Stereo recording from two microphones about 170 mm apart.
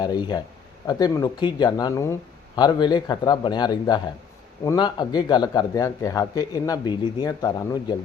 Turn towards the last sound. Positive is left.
turn(degrees=25)  # may be behind; listen again after turning